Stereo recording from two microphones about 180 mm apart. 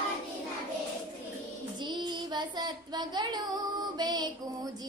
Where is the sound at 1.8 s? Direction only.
25° right (ahead or behind).